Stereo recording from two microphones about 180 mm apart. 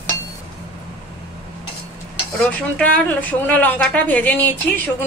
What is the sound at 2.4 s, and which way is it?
Speech, 5° left (ahead or behind).